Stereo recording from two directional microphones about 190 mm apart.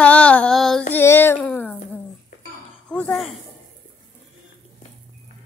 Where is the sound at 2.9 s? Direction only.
5° left (ahead or behind).